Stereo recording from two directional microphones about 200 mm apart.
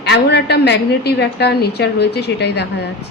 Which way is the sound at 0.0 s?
55° left (ahead or behind).